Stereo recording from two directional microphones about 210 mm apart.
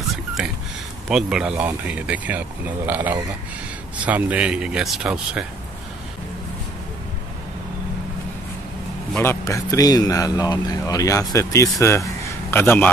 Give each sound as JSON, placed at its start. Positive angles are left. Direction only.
{"t": 1.0, "sound": "speech", "side_deg": -5}
{"t": 9.1, "sound": "speech", "side_deg": 10}